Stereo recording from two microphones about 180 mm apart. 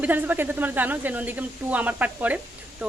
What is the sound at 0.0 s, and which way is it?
Speech, 10° right (ahead or behind).